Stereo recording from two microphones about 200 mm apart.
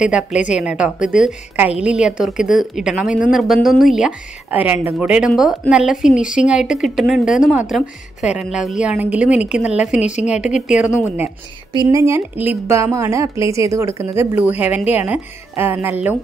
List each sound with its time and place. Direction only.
0.0 s speech: 5° right (ahead or behind)
11.7 s a woman's voice: 20° right (ahead or behind)